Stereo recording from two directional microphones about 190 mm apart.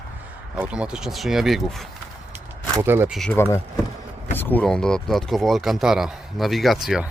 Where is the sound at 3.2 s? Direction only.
10° left (ahead or behind).